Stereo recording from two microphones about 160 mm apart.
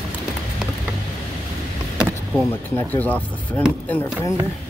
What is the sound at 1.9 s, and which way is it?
Vehicle, 5° right (ahead or behind).